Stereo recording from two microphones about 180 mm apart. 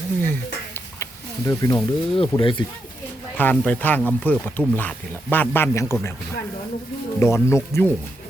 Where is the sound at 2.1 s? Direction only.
30° left (ahead or behind).